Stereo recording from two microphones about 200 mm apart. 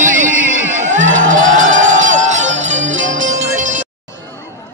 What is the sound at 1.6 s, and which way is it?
Music, 40° right (ahead or behind).